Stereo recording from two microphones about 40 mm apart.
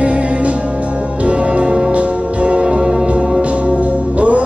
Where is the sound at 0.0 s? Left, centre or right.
Right.